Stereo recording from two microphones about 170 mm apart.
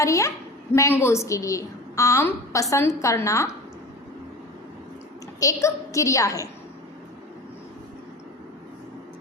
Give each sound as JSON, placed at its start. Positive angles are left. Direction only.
{"t": 0.0, "sound": "a woman's voice", "side_deg": 20}
{"t": 5.4, "sound": "a woman's voice", "side_deg": 20}